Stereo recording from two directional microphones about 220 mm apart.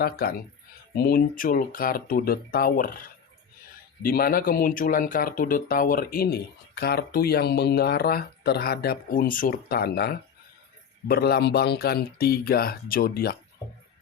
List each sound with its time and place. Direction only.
0.0 s speech: 45° left (ahead or behind)
4.0 s speech: 40° left (ahead or behind)